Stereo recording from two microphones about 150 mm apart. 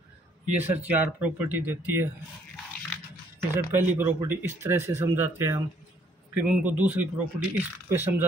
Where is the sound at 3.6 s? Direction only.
15° right (ahead or behind).